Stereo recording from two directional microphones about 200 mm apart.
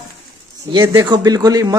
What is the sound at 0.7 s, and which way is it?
Speech, 20° right (ahead or behind).